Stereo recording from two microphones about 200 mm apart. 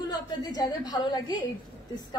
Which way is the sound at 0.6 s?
20° left (ahead or behind).